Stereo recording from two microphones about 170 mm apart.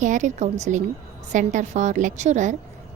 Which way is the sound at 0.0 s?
45° right (ahead or behind).